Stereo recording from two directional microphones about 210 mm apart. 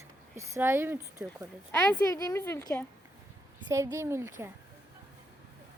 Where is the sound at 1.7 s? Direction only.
10° left (ahead or behind).